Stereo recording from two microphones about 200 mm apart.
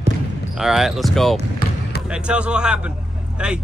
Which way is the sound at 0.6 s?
Centre (ahead or behind).